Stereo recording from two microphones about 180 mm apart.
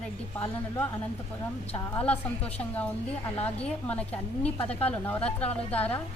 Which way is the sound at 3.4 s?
5° left (ahead or behind).